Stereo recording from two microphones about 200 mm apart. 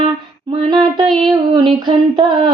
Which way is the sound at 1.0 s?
Centre (ahead or behind).